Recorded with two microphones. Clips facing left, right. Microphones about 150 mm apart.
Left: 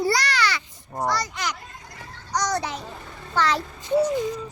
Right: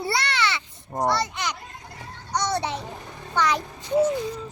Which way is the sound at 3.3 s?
15° right (ahead or behind).